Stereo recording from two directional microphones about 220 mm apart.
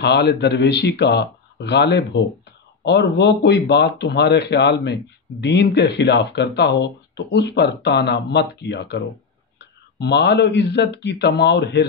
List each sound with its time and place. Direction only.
0.0 s speech: 50° left (ahead or behind)